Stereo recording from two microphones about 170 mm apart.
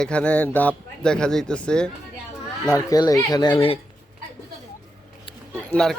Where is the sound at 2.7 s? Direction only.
20° left (ahead or behind).